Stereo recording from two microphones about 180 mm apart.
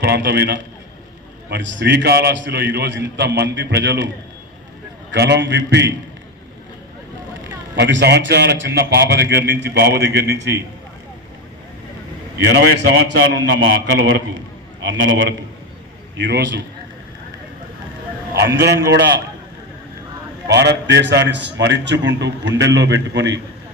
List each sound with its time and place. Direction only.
0.0 s a man's voice: 65° right (ahead or behind)
5.1 s a man's voice: 70° right (ahead or behind)
7.8 s a man's voice: 75° right (ahead or behind)
12.5 s a man's voice: 75° right (ahead or behind)
18.3 s a man's voice: 75° right (ahead or behind)
20.5 s a man's voice: 70° right (ahead or behind)